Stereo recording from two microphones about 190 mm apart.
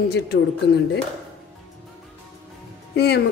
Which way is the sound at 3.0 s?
60° left (ahead or behind).